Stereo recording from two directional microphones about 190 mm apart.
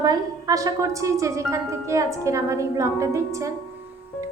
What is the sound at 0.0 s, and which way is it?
A woman's voice, 20° right (ahead or behind).